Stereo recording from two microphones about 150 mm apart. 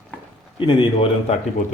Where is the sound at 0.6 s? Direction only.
35° left (ahead or behind).